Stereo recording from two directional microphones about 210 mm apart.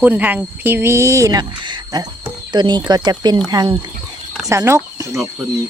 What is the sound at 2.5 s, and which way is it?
Speech, 20° right (ahead or behind).